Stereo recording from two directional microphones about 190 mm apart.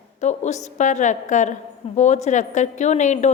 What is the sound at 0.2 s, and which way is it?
A woman's voice, 35° left (ahead or behind).